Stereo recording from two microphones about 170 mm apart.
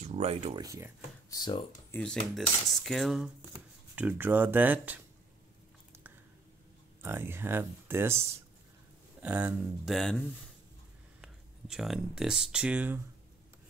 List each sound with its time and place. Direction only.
0.0 s speech: 40° right (ahead or behind)
0.6 s speech: 20° right (ahead or behind)
1.3 s speech: 25° left (ahead or behind)
1.9 s speech: 5° left (ahead or behind); by 5.0 s 10° right (ahead or behind)
7.0 s speech: 15° right (ahead or behind)
9.2 s speech: 10° right (ahead or behind)
9.9 s speech: 5° left (ahead or behind)